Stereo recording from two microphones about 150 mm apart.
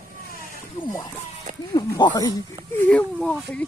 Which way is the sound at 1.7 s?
25° left (ahead or behind).